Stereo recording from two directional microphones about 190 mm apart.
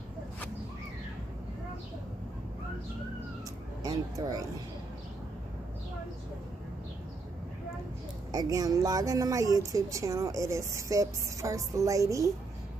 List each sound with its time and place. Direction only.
3.8 s speech: 20° right (ahead or behind)
8.3 s a woman's voice: 20° right (ahead or behind)